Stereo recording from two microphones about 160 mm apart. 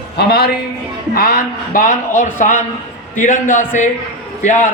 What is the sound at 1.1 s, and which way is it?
A man's voice, 65° left (ahead or behind).